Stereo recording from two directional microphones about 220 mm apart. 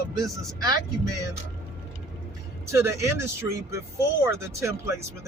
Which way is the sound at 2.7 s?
10° right (ahead or behind).